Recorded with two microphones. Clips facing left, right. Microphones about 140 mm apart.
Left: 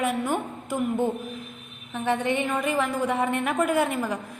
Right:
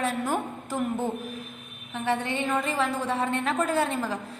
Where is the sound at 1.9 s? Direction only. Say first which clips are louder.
Left 3 dB; 15° left (ahead or behind).